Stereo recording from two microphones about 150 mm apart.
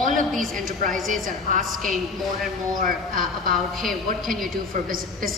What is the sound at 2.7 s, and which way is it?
Speech, 70° right (ahead or behind).